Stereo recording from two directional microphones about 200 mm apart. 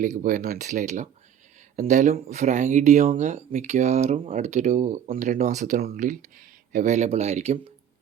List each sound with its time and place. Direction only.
0.0 s speech: 40° right (ahead or behind)